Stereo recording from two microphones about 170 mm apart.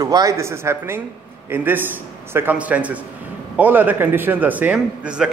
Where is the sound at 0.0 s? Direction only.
20° right (ahead or behind).